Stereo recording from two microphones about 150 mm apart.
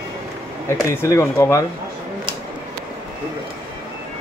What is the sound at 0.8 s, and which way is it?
Speech, 20° left (ahead or behind).